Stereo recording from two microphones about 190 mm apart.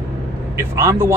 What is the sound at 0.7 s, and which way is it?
Speech, 15° right (ahead or behind).